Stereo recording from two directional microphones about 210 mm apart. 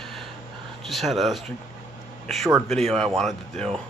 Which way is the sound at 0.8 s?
Centre (ahead or behind).